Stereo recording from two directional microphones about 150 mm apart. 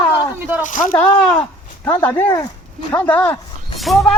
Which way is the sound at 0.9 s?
20° left (ahead or behind).